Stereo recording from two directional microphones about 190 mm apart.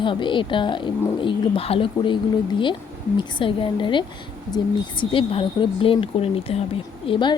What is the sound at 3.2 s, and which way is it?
A woman's voice, 25° left (ahead or behind).